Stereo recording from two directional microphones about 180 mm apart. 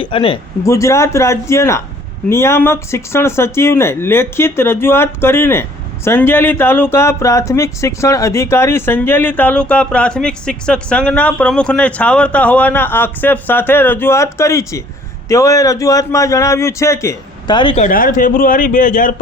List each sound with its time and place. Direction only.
0.0 s speech: 30° left (ahead or behind)
0.6 s speech: 15° left (ahead or behind)
17.8 s a man's voice: 45° left (ahead or behind)